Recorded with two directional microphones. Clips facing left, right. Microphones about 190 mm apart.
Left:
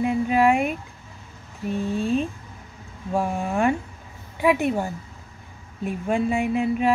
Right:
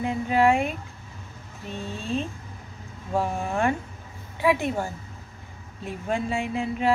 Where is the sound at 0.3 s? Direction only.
15° left (ahead or behind).